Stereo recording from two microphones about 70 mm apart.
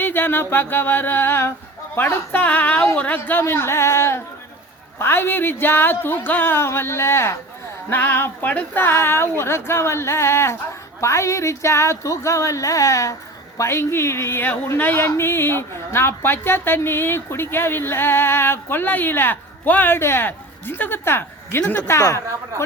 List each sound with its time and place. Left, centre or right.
0.0 s a woman's voice: left
2.3 s speech: left
3.4 s a woman's voice: left
7.9 s a woman's voice: left
13.6 s a woman's voice: left
20.0 s a woman's voice: left